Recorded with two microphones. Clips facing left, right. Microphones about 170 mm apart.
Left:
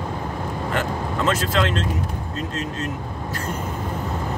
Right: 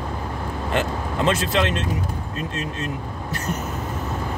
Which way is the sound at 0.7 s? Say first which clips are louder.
Right 2 dB; 25° right (ahead or behind).